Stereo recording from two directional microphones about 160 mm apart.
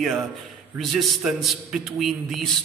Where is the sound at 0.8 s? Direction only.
Centre (ahead or behind).